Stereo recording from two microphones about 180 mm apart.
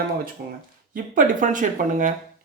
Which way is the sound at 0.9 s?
45° right (ahead or behind).